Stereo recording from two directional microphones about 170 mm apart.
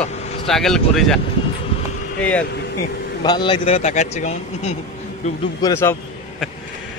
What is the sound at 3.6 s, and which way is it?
Speech, 40° left (ahead or behind).